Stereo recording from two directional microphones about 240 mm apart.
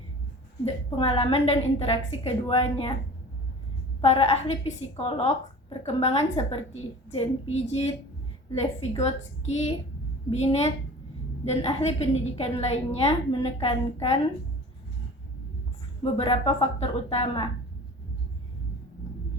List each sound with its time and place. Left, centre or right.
0.6 s a woman's voice: left
4.0 s a woman's voice: left
16.1 s a woman's voice: left